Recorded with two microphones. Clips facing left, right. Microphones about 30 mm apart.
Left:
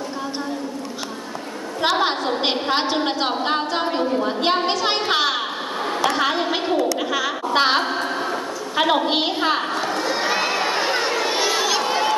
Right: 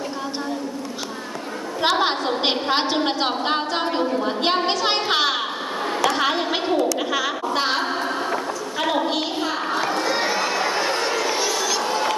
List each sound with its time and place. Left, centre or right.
1.8 s a woman's voice: centre
7.5 s a woman's voice: left
7.8 s music: centre
8.7 s a woman's voice: left
9.7 s a woman's voice: centre
10.3 s crowd: left
11.2 s a sound: left